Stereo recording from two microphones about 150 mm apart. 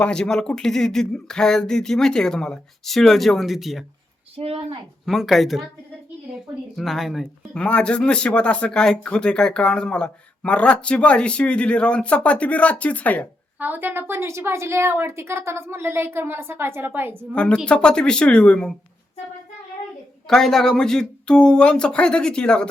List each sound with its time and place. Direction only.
0.0 s speech: 5° left (ahead or behind)
4.4 s speech: 40° right (ahead or behind)
5.0 s speech: centre (ahead or behind)
6.7 s speech: centre (ahead or behind)
13.6 s a woman's voice: 10° right (ahead or behind)
17.3 s speech: 5° left (ahead or behind)
20.2 s speech: 5° left (ahead or behind)